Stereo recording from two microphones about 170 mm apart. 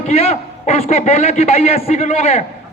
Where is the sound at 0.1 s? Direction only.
35° left (ahead or behind).